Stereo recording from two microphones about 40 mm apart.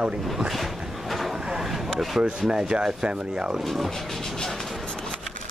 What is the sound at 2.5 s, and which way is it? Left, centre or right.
Speech, right.